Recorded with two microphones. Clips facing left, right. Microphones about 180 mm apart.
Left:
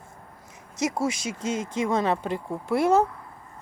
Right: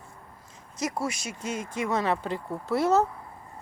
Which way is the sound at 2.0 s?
20° left (ahead or behind).